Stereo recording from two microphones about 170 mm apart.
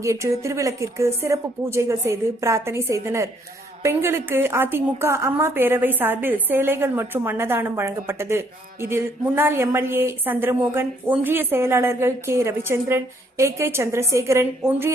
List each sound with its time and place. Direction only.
0.0 s a woman's voice: 15° right (ahead or behind)